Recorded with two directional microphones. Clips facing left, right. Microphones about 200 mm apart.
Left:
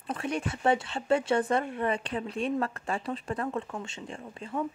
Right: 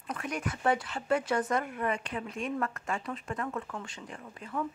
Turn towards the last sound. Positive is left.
turn(degrees=25)  # may be behind; listen again after turning